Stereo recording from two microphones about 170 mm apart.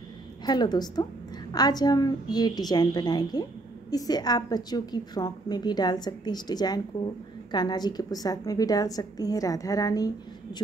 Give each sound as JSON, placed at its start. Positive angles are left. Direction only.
{"t": 0.5, "sound": "a woman's voice", "side_deg": 25}